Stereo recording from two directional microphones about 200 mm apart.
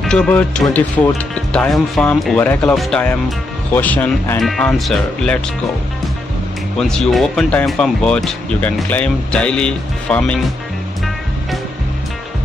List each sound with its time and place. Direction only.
0.0 s speech: 5° left (ahead or behind)
6.8 s speech: centre (ahead or behind)